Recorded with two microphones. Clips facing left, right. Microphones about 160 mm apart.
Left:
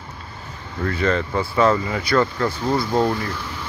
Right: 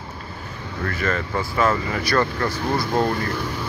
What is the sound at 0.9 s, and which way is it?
Speech, 25° left (ahead or behind).